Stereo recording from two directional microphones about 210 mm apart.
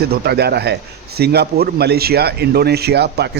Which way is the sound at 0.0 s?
50° right (ahead or behind).